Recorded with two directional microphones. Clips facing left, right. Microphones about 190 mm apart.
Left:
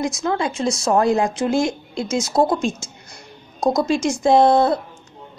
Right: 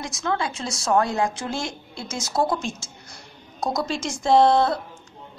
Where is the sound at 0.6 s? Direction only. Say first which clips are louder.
Left 5 dB; 25° left (ahead or behind).